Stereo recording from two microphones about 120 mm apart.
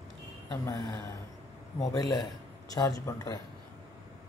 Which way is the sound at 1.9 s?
30° left (ahead or behind).